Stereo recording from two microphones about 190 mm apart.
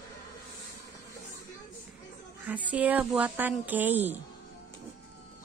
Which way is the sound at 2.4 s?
10° right (ahead or behind).